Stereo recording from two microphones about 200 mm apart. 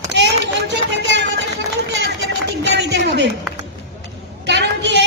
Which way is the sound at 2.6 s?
60° right (ahead or behind).